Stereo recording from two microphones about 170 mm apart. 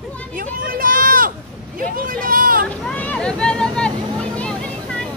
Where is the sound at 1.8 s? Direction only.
55° right (ahead or behind).